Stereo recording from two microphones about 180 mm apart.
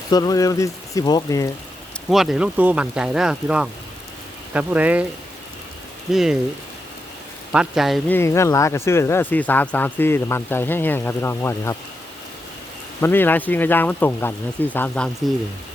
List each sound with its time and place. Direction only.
0.1 s speech: 20° left (ahead or behind)
2.0 s speech: centre (ahead or behind)
6.1 s speech: centre (ahead or behind)
7.5 s speech: 5° right (ahead or behind)
8.1 s speech: 15° left (ahead or behind)
13.0 s speech: 10° left (ahead or behind)